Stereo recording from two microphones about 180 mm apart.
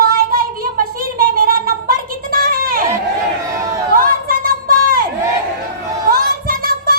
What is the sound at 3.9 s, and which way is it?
Chatter, 55° right (ahead or behind).